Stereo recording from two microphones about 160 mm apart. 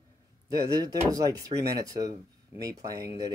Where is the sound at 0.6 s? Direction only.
20° right (ahead or behind).